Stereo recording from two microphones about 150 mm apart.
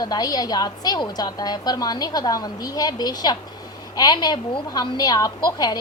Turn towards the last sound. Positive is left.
turn(degrees=25)  # may be behind; listen again after turning